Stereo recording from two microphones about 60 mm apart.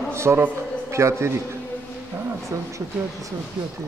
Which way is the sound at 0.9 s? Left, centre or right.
Right.